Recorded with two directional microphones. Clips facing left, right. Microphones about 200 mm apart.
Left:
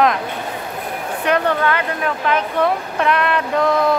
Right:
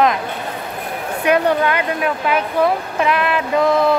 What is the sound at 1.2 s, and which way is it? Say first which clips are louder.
Speech: right 2 dB; 10° right (ahead or behind).